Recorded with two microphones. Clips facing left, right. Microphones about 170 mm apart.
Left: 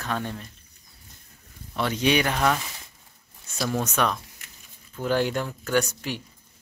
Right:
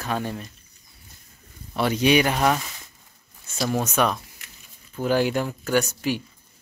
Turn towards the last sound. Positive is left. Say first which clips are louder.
# right 2 dB
turn(degrees=-10)  # may be behind; listen again after turning